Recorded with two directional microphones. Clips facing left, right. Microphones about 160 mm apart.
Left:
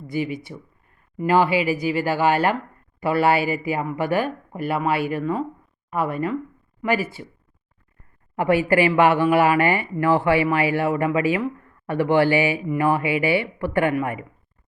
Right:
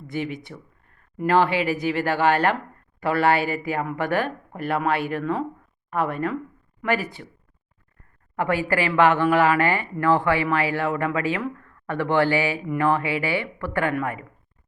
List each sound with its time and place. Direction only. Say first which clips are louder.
0.1 s speech: left 3 dB; centre (ahead or behind)
8.4 s speech: left 5 dB; 15° left (ahead or behind)